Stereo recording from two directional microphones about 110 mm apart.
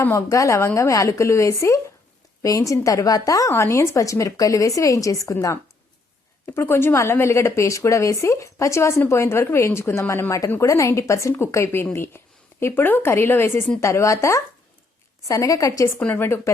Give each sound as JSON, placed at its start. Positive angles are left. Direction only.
{"t": 0.0, "sound": "a woman's voice", "side_deg": 25}
{"t": 16.0, "sound": "a woman's voice", "side_deg": 15}